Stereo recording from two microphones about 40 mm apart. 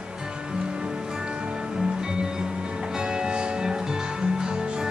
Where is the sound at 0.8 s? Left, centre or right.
Centre.